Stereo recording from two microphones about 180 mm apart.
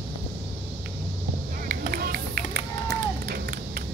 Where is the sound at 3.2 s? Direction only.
55° right (ahead or behind).